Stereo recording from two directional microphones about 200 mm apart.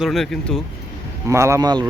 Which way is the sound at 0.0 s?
Centre (ahead or behind).